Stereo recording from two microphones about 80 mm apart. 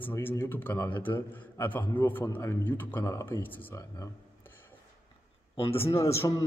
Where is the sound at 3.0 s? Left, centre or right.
Left.